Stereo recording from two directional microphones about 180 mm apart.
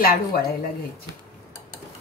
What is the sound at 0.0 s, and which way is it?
Speech, 55° left (ahead or behind).